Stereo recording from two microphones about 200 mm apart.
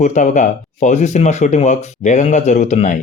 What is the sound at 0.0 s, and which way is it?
Speech, 35° left (ahead or behind).